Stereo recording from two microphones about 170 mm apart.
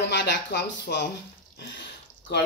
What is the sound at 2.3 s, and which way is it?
Speech, 80° left.